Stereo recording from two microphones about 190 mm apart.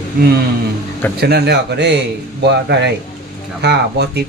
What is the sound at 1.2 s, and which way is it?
Speech, 60° right (ahead or behind).